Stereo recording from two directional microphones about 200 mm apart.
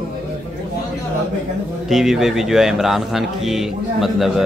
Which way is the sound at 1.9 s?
Centre (ahead or behind).